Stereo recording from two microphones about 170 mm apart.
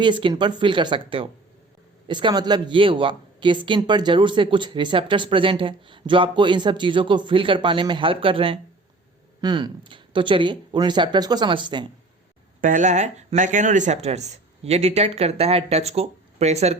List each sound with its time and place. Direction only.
0.0 s speech: 30° right (ahead or behind)
12.6 s speech: 50° right (ahead or behind)